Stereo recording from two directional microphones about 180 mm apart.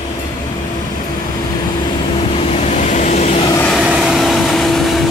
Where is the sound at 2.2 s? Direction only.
35° left (ahead or behind).